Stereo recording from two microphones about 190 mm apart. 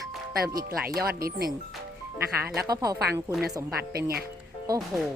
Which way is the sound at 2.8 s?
20° right (ahead or behind).